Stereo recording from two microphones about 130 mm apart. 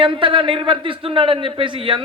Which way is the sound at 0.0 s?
40° right (ahead or behind).